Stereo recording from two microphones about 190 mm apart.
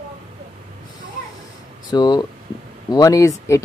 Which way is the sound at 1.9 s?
20° left (ahead or behind).